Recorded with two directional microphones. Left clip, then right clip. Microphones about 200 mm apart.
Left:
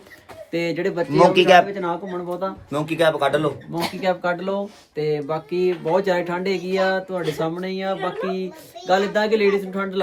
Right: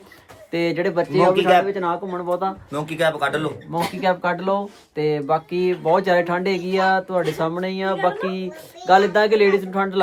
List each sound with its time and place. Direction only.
0.5 s speech: 15° right (ahead or behind)
1.4 s speech: 50° left (ahead or behind)
1.6 s speech: 15° right (ahead or behind)
2.7 s speech: 35° left (ahead or behind)
3.7 s speech: 15° right (ahead or behind)